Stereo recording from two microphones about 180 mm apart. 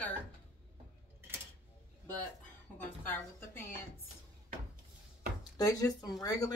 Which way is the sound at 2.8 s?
10° left (ahead or behind).